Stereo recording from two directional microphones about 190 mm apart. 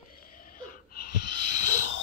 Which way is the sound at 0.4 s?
50° left (ahead or behind).